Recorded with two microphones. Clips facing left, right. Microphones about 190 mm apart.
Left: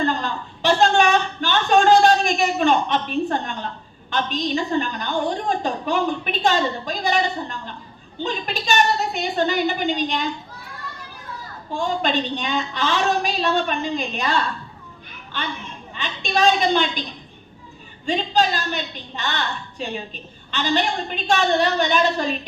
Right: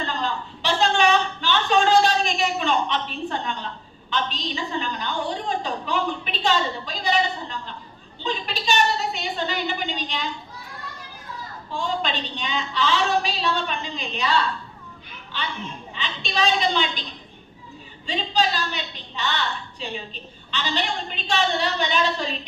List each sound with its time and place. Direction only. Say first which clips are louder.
0.0 s a sound: left 4 dB; 45° left (ahead or behind)
4.1 s a woman's voice: left 5 dB; 45° left (ahead or behind)
11.7 s a woman's voice: left 4 dB; 45° left (ahead or behind)
18.0 s a woman's voice: left 4 dB; 45° left (ahead or behind)